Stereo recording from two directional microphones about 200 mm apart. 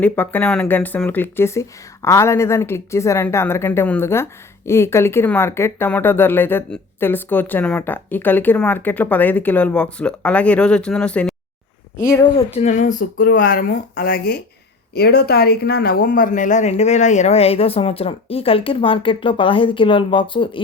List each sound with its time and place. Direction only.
0.0 s speech: 10° left (ahead or behind)
12.5 s speech: 35° left (ahead or behind)